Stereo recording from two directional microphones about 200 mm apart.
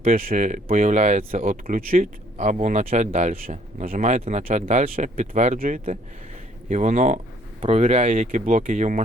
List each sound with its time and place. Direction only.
0.0 s speech: 45° right (ahead or behind)